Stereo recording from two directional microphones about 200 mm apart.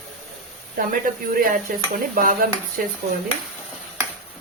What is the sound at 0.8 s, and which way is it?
Speech, 45° right (ahead or behind).